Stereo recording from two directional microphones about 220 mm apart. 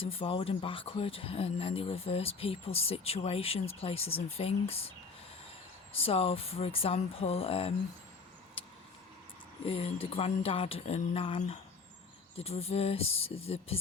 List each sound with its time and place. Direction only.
0.0 s speech: 25° left (ahead or behind)
6.0 s speech: 25° left (ahead or behind)
8.6 s vehicle: 25° left (ahead or behind)
9.6 s speech: 25° left (ahead or behind)